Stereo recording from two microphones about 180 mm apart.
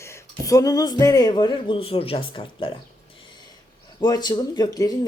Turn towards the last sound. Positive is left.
turn(degrees=20)  # may be behind; listen again after turning